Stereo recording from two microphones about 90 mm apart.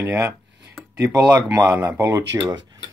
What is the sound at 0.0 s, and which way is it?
Speech, 30° right (ahead or behind).